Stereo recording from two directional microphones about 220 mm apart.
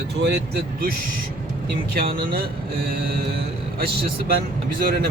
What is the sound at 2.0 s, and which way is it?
Speech, 40° right (ahead or behind).